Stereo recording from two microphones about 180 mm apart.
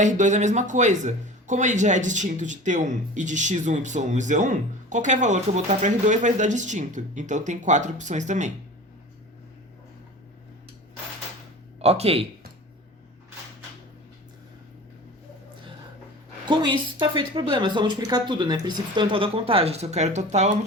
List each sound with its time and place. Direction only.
0.0 s speech: 40° right (ahead or behind)
11.8 s speech: 35° right (ahead or behind)
16.5 s a woman's voice: 25° right (ahead or behind)